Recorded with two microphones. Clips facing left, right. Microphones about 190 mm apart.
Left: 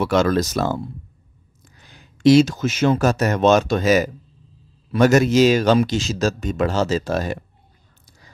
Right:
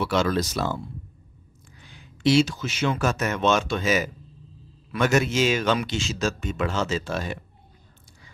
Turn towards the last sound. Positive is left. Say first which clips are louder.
# left 6 dB
turn(degrees=40)  # may be behind; listen again after turning